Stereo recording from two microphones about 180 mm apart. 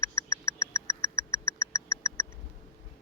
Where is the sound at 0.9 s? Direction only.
15° left (ahead or behind).